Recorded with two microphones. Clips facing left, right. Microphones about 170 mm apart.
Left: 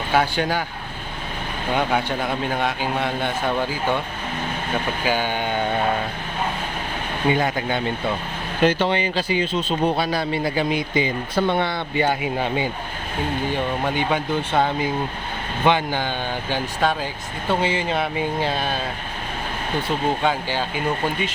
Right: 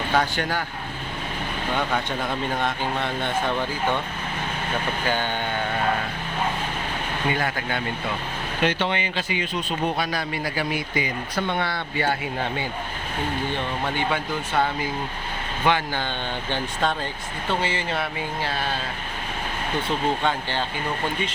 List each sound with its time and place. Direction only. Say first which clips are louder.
0.1 s speech: left 4 dB; 10° left (ahead or behind)
1.7 s speech: left 5 dB; 10° left (ahead or behind)
5.0 s speech: left 3 dB; 10° left (ahead or behind)
7.3 s speech: left 6 dB; 20° left (ahead or behind)
8.6 s speech: left 5 dB; 35° left (ahead or behind); by 12.6 s 15° left (ahead or behind)
13.8 s speech: left 3 dB; 15° left (ahead or behind)
20.2 s speech: left 3 dB; 10° left (ahead or behind)